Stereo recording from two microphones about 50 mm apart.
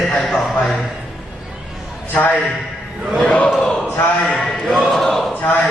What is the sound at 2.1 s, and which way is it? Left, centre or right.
Speech, left.